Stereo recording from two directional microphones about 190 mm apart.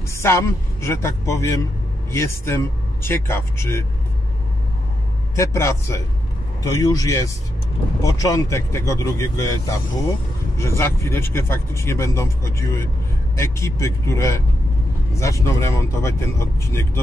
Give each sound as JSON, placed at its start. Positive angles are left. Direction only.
{"t": 0.1, "sound": "speech", "side_deg": 15}
{"t": 5.3, "sound": "a man's voice", "side_deg": 15}